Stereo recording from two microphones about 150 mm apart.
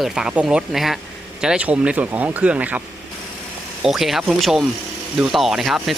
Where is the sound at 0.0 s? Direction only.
5° right (ahead or behind).